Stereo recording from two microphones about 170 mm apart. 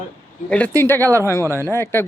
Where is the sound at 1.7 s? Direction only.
15° left (ahead or behind).